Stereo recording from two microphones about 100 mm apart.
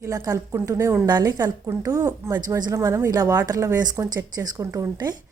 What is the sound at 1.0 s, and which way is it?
Speech, 45° right (ahead or behind).